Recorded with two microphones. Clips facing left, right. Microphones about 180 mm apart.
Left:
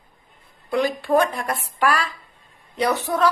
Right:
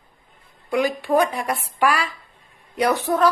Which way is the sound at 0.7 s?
15° right (ahead or behind).